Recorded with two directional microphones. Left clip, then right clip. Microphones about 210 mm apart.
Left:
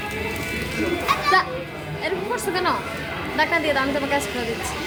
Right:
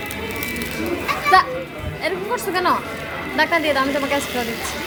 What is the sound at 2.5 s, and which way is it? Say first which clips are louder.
A woman's voice: right 5 dB; 10° right (ahead or behind).